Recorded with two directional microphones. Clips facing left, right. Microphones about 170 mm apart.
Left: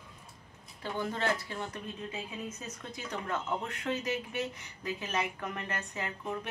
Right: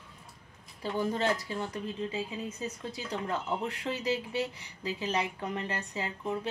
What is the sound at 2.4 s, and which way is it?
Speech, 35° right (ahead or behind).